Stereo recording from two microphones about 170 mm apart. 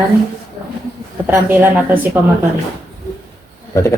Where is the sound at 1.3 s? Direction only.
10° right (ahead or behind).